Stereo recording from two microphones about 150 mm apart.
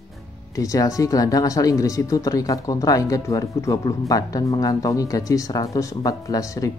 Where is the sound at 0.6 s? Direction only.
20° left (ahead or behind).